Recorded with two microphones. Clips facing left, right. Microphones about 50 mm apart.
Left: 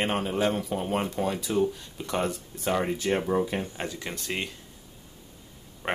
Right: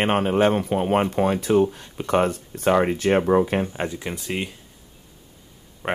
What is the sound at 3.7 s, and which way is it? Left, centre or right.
Speech, right.